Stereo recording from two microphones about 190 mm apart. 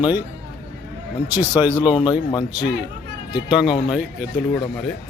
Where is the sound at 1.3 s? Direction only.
10° right (ahead or behind).